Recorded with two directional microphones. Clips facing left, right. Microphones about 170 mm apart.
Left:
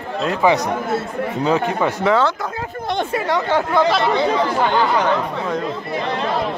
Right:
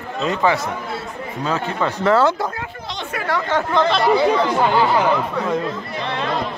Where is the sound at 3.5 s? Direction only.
10° left (ahead or behind).